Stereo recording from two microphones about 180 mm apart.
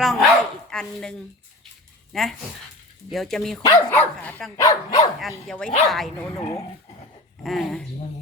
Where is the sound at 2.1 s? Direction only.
Centre (ahead or behind).